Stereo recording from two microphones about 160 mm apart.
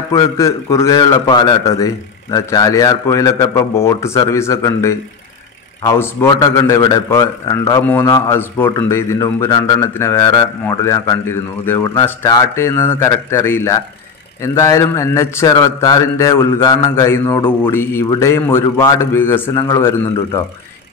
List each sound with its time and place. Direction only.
0.1 s a man's voice: 20° left (ahead or behind)